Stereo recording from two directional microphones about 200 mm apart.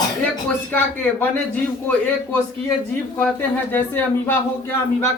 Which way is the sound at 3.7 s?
10° left (ahead or behind).